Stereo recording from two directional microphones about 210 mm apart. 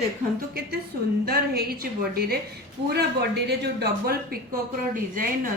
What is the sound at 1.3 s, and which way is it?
Speech, 45° right (ahead or behind).